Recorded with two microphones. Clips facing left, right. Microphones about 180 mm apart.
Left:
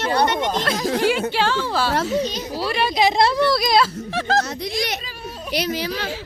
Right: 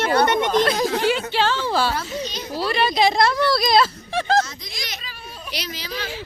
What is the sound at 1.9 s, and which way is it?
Speech, 65° left (ahead or behind).